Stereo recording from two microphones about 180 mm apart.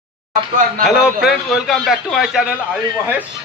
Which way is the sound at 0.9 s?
5° right (ahead or behind).